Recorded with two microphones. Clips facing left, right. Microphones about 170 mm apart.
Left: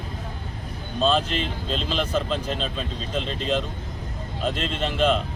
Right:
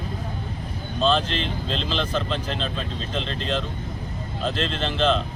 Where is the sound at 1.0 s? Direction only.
5° left (ahead or behind).